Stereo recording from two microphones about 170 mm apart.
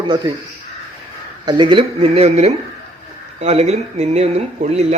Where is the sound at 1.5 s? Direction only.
30° right (ahead or behind).